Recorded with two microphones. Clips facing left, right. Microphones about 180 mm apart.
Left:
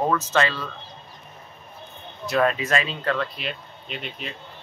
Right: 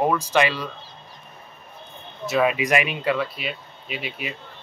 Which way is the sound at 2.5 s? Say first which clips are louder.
Right 3 dB; 15° right (ahead or behind).